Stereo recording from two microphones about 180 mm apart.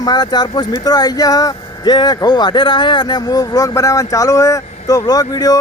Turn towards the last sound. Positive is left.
turn(degrees=20)  # may be behind; listen again after turning